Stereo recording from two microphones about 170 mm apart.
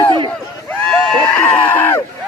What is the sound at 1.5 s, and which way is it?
Screaming, 10° left (ahead or behind).